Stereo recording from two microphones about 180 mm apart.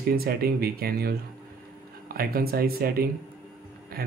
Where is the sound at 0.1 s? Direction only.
60° right (ahead or behind).